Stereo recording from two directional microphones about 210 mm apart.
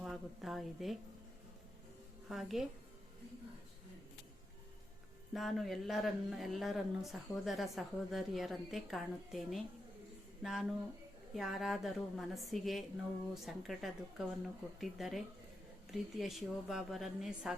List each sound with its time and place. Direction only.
0.0 s a woman's voice: centre (ahead or behind)
2.3 s a woman's voice: centre (ahead or behind)
5.3 s a woman's voice: centre (ahead or behind)